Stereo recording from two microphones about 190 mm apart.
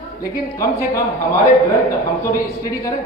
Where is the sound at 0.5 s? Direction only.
15° left (ahead or behind).